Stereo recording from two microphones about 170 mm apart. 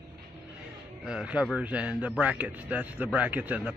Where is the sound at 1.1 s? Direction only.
5° right (ahead or behind).